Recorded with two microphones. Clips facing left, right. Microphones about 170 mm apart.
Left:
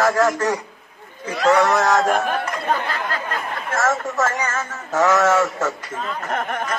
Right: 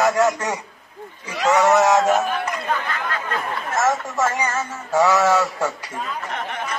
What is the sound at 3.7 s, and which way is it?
Speech, 15° right (ahead or behind).